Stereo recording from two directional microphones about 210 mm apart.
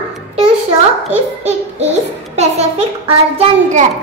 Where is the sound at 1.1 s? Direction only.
30° right (ahead or behind).